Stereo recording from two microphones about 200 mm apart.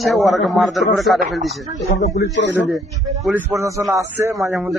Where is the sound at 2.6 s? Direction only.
Centre (ahead or behind).